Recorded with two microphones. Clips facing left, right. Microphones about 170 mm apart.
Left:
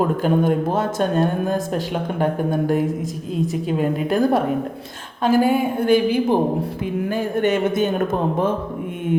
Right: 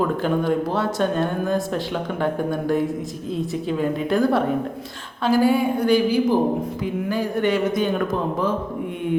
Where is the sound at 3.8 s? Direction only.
45° left (ahead or behind).